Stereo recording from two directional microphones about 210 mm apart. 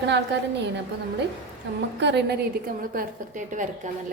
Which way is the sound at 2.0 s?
55° right (ahead or behind).